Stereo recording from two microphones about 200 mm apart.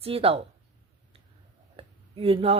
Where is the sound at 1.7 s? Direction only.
30° right (ahead or behind).